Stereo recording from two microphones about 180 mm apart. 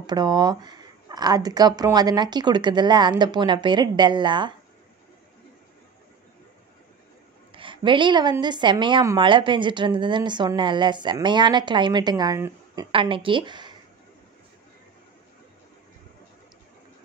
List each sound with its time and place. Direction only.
0.0 s a woman's voice: 25° right (ahead or behind)
7.5 s a woman's voice: 25° right (ahead or behind)
12.9 s a woman's voice: 30° right (ahead or behind)